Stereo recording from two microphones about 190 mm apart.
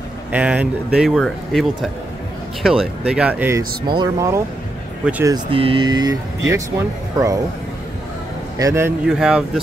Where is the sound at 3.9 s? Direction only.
20° right (ahead or behind).